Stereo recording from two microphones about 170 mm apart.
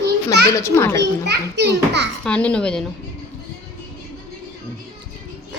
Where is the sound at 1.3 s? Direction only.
80° right.